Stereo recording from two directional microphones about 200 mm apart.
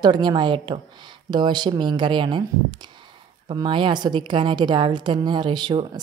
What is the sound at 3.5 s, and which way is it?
A woman's voice, 25° right (ahead or behind).